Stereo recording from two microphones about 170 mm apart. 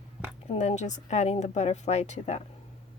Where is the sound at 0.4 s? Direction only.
40° left (ahead or behind).